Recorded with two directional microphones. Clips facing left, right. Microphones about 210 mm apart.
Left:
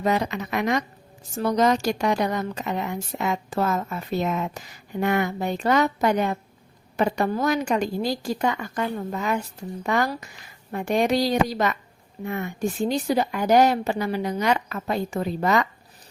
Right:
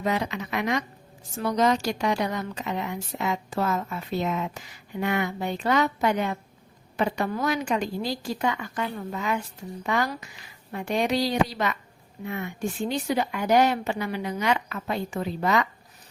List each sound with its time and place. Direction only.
0.0 s a woman's voice: 40° left (ahead or behind)